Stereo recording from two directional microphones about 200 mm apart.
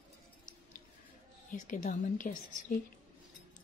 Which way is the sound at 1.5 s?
40° left (ahead or behind).